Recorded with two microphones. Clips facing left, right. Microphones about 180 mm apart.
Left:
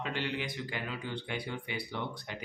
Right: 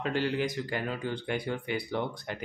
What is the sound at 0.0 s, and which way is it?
Speech, 45° right (ahead or behind).